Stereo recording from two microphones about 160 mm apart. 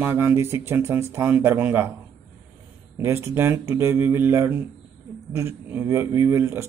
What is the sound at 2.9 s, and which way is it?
Speech, 15° right (ahead or behind).